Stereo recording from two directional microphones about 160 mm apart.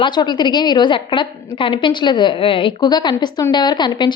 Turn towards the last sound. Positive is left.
turn(degrees=30)  # may be behind; listen again after turning